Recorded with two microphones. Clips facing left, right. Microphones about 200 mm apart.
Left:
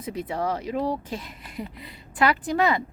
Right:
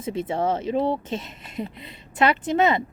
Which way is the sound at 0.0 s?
25° right (ahead or behind).